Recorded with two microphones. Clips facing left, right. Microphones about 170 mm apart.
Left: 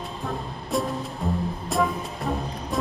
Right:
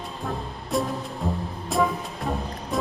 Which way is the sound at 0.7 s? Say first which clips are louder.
Even; centre (ahead or behind).